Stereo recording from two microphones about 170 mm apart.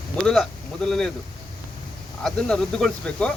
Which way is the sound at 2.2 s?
5° left (ahead or behind).